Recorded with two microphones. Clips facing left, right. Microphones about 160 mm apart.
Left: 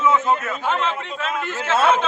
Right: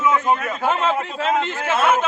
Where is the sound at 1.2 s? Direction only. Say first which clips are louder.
Right 6 dB; 30° right (ahead or behind).